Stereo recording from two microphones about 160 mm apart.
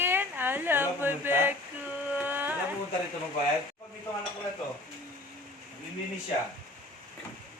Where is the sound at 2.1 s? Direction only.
10° right (ahead or behind).